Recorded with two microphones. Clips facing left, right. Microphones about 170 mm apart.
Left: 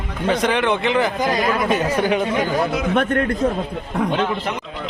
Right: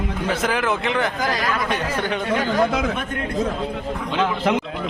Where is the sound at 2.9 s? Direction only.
65° left (ahead or behind).